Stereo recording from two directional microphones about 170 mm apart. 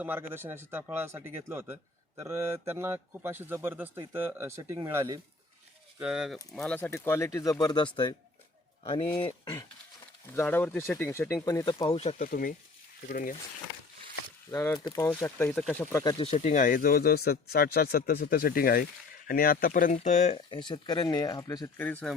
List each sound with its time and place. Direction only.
0.0 s a man's voice: 10° right (ahead or behind)
6.0 s speech: 5° right (ahead or behind)
6.6 s speech: 10° left (ahead or behind); by 9.6 s 25° left (ahead or behind)
10.3 s speech: 10° left (ahead or behind); by 12.1 s 35° left (ahead or behind)
12.2 s a man's voice: 55° left (ahead or behind)
14.5 s speech: 20° left (ahead or behind)
16.1 s a man's voice: 40° left (ahead or behind)
20.5 s speech: 30° left (ahead or behind)
21.8 s speech: 10° left (ahead or behind)